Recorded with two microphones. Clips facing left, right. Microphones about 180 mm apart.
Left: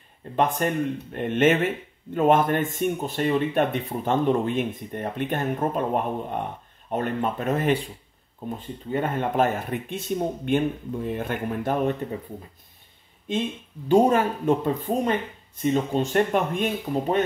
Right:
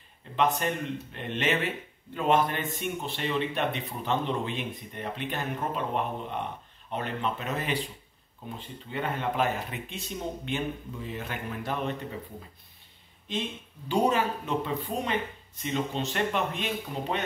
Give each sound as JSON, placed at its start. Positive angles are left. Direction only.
{"t": 0.4, "sound": "speech", "side_deg": 50}
{"t": 13.8, "sound": "speech", "side_deg": 50}